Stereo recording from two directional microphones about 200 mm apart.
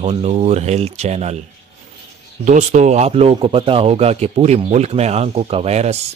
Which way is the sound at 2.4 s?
35° right (ahead or behind).